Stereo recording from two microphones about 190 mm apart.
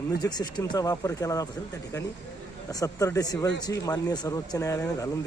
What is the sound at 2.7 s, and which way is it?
A man's voice, 20° left (ahead or behind).